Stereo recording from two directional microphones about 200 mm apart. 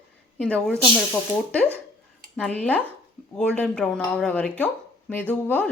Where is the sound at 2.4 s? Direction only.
5° left (ahead or behind).